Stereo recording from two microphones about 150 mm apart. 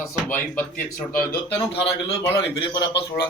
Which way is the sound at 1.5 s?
40° left (ahead or behind).